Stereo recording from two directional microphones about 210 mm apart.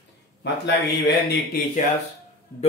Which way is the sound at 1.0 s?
45° left (ahead or behind).